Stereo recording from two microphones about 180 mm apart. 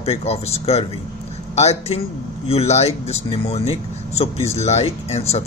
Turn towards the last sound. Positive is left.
turn(degrees=35)  # may be behind; listen again after turning